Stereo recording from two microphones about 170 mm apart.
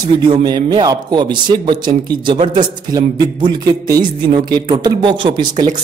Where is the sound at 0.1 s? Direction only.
25° right (ahead or behind).